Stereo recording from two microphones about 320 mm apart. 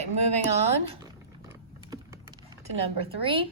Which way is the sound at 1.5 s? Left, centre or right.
Centre.